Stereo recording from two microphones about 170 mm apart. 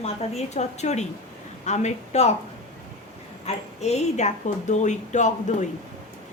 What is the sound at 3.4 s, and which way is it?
A woman's voice, 40° left (ahead or behind).